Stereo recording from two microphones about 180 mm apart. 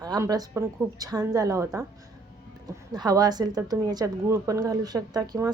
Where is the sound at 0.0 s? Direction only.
20° right (ahead or behind).